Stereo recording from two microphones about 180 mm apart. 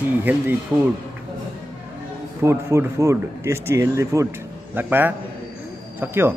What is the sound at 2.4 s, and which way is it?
A man's voice, 15° right (ahead or behind).